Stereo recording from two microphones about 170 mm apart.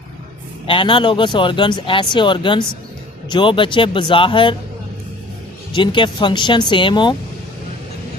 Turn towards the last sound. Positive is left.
turn(degrees=30)  # may be behind; listen again after turning